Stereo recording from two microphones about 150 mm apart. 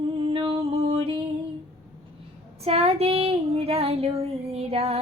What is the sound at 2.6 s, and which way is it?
Female singing, 45° right (ahead or behind).